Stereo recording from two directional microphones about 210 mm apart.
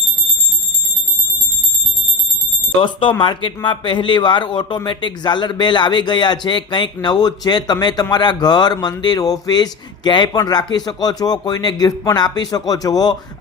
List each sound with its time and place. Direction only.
2.8 s speech: 25° left (ahead or behind)